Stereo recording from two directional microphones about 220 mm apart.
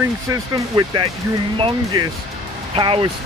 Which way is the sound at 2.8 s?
25° right (ahead or behind).